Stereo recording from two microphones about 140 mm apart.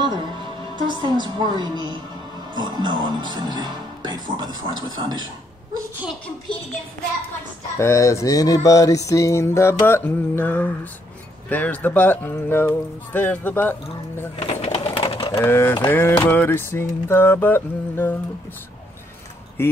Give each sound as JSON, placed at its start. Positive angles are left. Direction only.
{"t": 0.7, "sound": "speech", "side_deg": -35}
{"t": 7.7, "sound": "a sound", "side_deg": 20}
{"t": 11.4, "sound": "speech", "side_deg": 10}
{"t": 14.4, "sound": "sewing machine", "side_deg": 45}
{"t": 15.3, "sound": "speech", "side_deg": 15}
{"t": 19.6, "sound": "speech", "side_deg": 15}